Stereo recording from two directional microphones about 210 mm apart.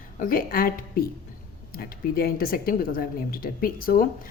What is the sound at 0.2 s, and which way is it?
A woman's voice, 45° left (ahead or behind).